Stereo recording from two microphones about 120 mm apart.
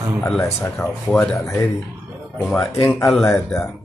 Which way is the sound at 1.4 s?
25° left (ahead or behind).